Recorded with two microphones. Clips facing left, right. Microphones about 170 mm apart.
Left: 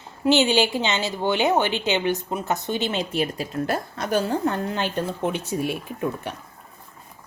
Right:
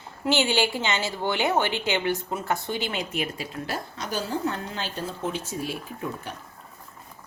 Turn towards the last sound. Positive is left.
turn(degrees=65)  # may be behind; listen again after turning